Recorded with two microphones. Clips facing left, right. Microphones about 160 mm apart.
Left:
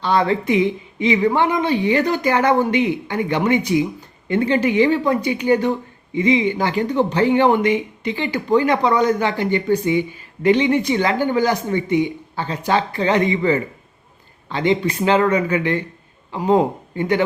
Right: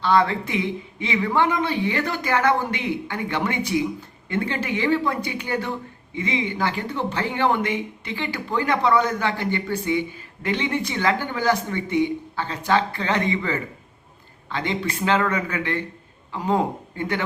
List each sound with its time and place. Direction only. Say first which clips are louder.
0.0 s speech: left 2 dB; 15° left (ahead or behind)
14.8 s speech: left 5 dB; 15° left (ahead or behind)